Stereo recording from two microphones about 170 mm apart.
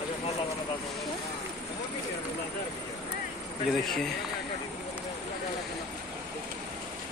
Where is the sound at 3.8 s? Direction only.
Centre (ahead or behind).